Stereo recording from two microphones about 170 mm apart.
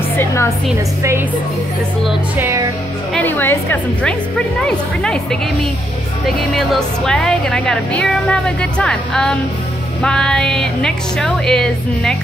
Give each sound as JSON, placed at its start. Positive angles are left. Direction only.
{"t": 0.2, "sound": "music", "side_deg": 15}
{"t": 2.3, "sound": "speech", "side_deg": -15}
{"t": 3.2, "sound": "a woman's voice", "side_deg": 10}